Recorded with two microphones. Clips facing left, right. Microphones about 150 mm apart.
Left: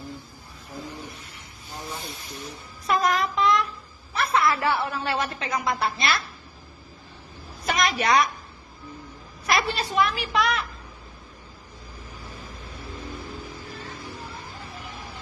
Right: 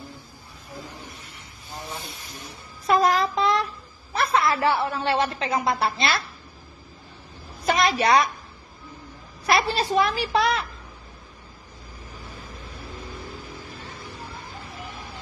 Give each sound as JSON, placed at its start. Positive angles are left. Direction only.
{"t": 2.9, "sound": "a woman's voice", "side_deg": -30}
{"t": 7.6, "sound": "a woman's voice", "side_deg": -30}
{"t": 9.5, "sound": "a woman's voice", "side_deg": -35}